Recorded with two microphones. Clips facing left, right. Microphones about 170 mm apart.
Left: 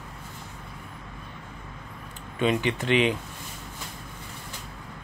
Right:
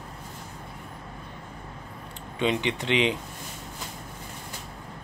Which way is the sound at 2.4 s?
20° right (ahead or behind).